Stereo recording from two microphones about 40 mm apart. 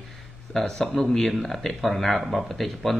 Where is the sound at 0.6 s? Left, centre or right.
Centre.